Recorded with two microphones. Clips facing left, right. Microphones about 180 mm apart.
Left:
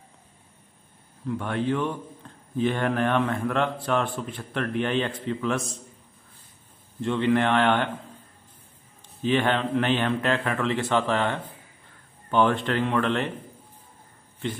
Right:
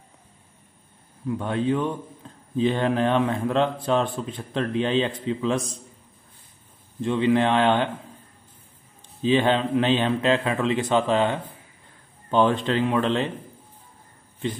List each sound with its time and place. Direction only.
1.2 s a man's voice: 15° right (ahead or behind)
7.0 s a man's voice: 15° right (ahead or behind)
9.2 s a man's voice: 20° right (ahead or behind)